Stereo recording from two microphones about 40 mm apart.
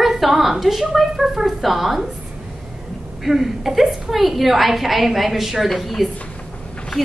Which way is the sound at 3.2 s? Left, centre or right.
Centre.